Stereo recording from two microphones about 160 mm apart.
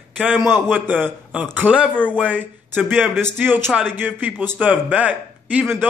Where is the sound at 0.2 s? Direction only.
5° left (ahead or behind).